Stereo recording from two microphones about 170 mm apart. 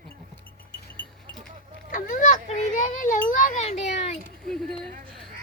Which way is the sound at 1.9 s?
50° left (ahead or behind).